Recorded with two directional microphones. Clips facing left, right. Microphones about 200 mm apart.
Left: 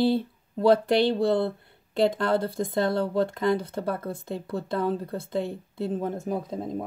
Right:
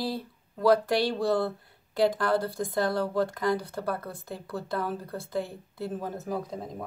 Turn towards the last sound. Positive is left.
turn(degrees=25)  # may be behind; listen again after turning